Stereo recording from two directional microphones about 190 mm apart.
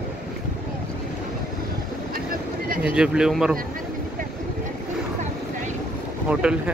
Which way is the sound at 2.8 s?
5° right (ahead or behind).